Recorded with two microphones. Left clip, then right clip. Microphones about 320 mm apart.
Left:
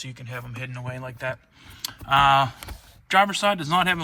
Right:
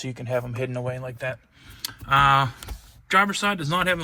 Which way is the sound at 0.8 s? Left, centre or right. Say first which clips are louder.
Right 1 dB; centre.